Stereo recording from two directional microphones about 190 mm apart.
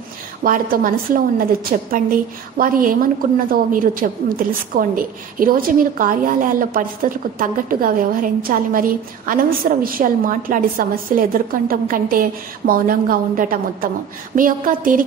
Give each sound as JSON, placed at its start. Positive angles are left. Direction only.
{"t": 0.4, "sound": "a woman's voice", "side_deg": -50}